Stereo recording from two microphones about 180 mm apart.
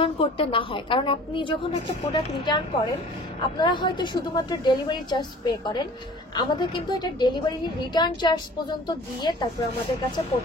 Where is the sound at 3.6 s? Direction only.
25° left (ahead or behind).